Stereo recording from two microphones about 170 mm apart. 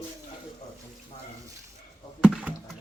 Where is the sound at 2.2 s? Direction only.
5° right (ahead or behind).